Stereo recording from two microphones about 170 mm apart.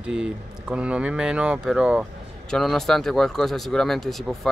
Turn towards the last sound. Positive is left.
turn(degrees=0)  # may be behind; listen again after turning